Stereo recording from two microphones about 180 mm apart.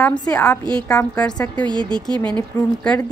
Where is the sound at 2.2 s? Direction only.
5° left (ahead or behind).